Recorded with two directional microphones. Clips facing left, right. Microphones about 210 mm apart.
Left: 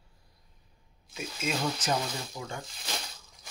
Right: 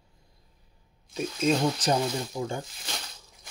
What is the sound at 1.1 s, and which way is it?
Speech, 35° right (ahead or behind).